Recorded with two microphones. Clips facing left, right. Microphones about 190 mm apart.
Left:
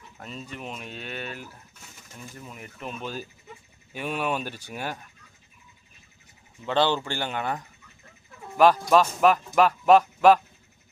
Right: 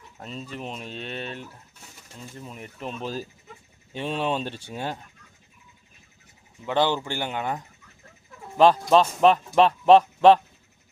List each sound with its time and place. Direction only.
0.4 s speech: 30° right (ahead or behind)
6.7 s speech: 15° right (ahead or behind)